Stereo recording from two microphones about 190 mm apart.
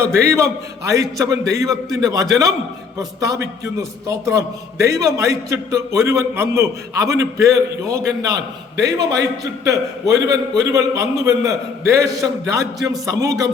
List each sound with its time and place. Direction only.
0.0 s a man's voice: 15° right (ahead or behind)
1.7 s a man's voice: centre (ahead or behind)
3.0 s a man's voice: 15° right (ahead or behind)